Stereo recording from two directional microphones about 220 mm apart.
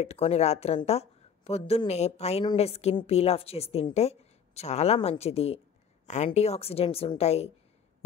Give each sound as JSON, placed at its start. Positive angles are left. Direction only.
{"t": 0.0, "sound": "speech", "side_deg": 30}